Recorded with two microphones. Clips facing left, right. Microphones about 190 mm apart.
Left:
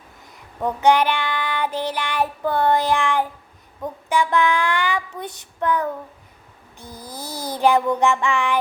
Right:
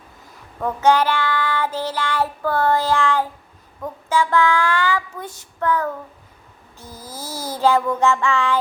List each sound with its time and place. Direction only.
0.6 s child singing: 15° left (ahead or behind)
6.7 s a sound: 15° left (ahead or behind)
7.1 s child singing: 15° left (ahead or behind)